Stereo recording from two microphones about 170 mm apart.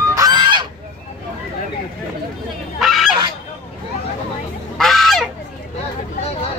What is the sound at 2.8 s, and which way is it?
Goose, centre (ahead or behind).